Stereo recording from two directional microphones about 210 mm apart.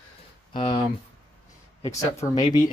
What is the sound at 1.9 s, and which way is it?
Speech, 15° left (ahead or behind).